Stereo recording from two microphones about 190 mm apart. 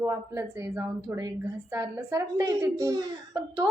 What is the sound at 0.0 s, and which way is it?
A woman's voice, 15° right (ahead or behind).